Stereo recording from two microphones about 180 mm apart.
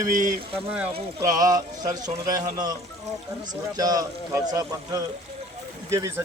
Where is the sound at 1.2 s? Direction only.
20° right (ahead or behind).